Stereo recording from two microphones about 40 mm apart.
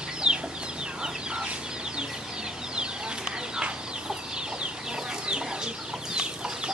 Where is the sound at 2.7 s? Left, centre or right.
Right.